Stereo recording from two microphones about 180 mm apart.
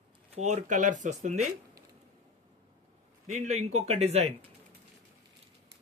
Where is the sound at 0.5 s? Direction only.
40° right (ahead or behind).